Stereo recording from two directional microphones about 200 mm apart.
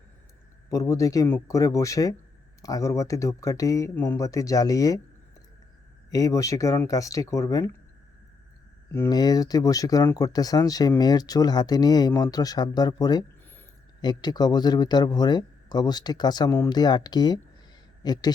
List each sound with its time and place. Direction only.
0.7 s speech: 15° left (ahead or behind)
6.1 s speech: 15° left (ahead or behind)
8.9 s speech: 15° left (ahead or behind)